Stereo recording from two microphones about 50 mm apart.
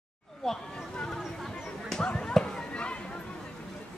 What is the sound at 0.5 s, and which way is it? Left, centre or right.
Speech, centre.